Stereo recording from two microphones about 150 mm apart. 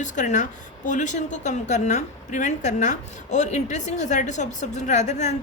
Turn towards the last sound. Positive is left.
turn(degrees=50)  # may be behind; listen again after turning